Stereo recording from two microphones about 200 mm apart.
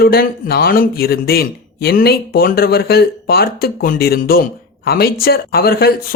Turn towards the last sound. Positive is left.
turn(degrees=50)  # may be behind; listen again after turning